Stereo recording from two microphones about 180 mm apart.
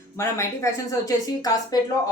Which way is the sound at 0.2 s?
15° left (ahead or behind).